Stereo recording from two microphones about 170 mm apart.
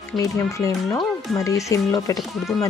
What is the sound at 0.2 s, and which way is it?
Speech, 20° left (ahead or behind).